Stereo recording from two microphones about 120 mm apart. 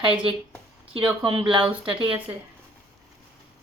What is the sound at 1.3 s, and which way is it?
Speech, 45° right (ahead or behind).